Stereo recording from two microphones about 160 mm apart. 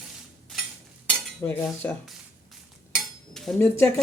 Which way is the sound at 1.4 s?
20° left (ahead or behind).